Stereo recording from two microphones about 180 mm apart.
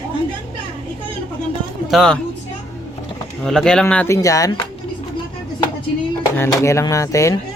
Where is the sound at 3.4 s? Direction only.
5° left (ahead or behind); by 4.5 s 20° left (ahead or behind).